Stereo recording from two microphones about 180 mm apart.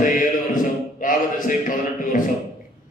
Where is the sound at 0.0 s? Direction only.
50° left (ahead or behind).